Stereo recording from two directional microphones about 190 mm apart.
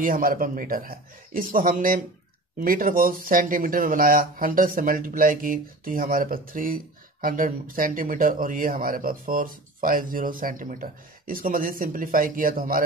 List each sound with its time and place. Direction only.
0.0 s speech: 45° right (ahead or behind)